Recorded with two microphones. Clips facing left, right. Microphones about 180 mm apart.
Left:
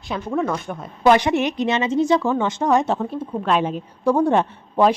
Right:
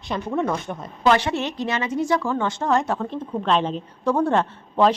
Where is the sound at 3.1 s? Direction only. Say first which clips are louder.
Left 1 dB; 5° left (ahead or behind).